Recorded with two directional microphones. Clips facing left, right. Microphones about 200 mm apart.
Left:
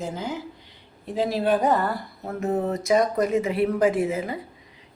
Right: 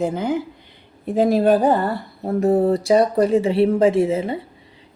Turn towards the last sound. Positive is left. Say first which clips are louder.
# right 6 dB
turn(degrees=-25)  # may be behind; listen again after turning